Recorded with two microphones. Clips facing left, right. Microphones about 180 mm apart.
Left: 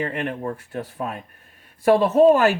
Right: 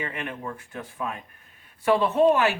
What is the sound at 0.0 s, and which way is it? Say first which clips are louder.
Speech: left 7 dB; 40° left (ahead or behind).